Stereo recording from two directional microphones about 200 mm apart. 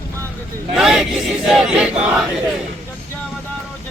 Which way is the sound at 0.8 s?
5° right (ahead or behind).